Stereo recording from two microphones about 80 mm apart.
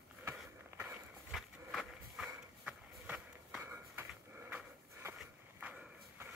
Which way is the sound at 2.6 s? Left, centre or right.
Centre.